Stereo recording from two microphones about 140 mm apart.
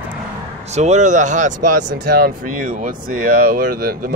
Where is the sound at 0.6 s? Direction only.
55° right (ahead or behind).